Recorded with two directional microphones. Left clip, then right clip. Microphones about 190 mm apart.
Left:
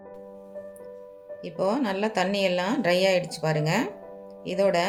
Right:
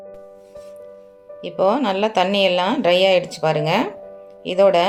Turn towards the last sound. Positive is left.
turn(degrees=-30)  # may be behind; listen again after turning